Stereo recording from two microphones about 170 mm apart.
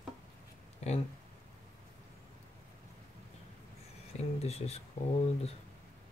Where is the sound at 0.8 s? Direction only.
40° left (ahead or behind).